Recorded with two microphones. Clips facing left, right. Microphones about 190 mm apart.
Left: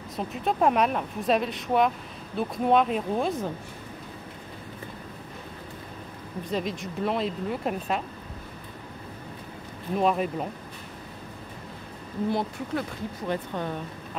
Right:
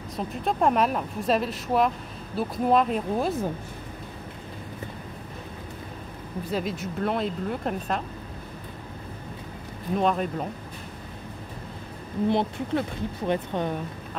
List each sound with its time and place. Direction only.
0.1 s a woman's voice: centre (ahead or behind)
6.5 s a woman's voice: centre (ahead or behind)
9.9 s a woman's voice: 5° left (ahead or behind)
12.3 s speech: 25° right (ahead or behind)